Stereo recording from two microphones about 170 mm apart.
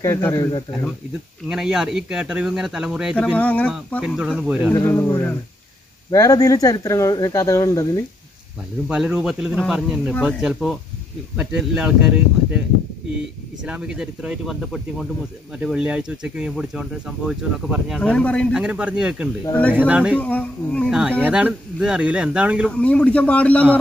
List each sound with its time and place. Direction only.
0.0 s speech: 15° left (ahead or behind)
1.5 s speech: 5° right (ahead or behind)
3.3 s speech: 10° left (ahead or behind)
4.0 s speech: 5° right (ahead or behind)
4.7 s speech: 15° left (ahead or behind)
8.8 s speech: 5° right (ahead or behind)
13.7 s speech: 5° right (ahead or behind)
20.2 s speech: 10° left (ahead or behind)
21.2 s speech: 5° right (ahead or behind)
22.7 s speech: 5° left (ahead or behind)